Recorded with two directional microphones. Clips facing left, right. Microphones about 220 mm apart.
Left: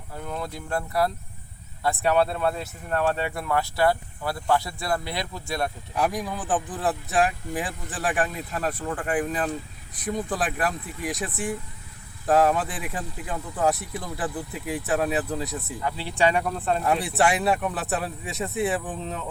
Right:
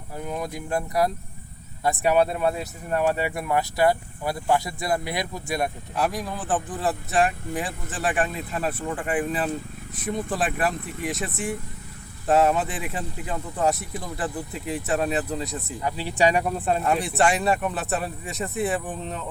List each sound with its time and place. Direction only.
0.2 s speech: 15° right (ahead or behind)
5.9 s speech: centre (ahead or behind)
12.3 s speech: centre (ahead or behind)
15.8 s speech: 15° right (ahead or behind)
16.8 s speech: 5° left (ahead or behind)